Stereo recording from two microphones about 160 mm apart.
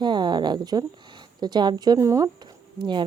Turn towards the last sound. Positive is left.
turn(degrees=-30)  # may be behind; listen again after turning